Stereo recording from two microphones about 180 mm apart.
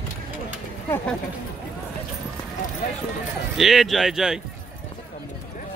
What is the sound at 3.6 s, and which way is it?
Speech, centre (ahead or behind).